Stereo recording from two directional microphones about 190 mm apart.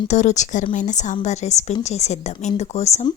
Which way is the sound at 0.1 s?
40° left (ahead or behind).